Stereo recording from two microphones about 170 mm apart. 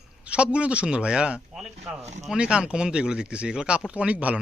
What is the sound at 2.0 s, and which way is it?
Speech, 40° right (ahead or behind).